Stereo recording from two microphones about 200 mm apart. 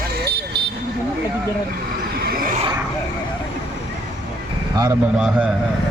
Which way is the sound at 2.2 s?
50° right (ahead or behind).